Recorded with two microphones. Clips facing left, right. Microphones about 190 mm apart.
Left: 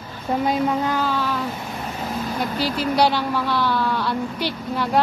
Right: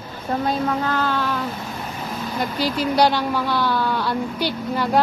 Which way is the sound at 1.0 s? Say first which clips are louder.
Even; centre (ahead or behind).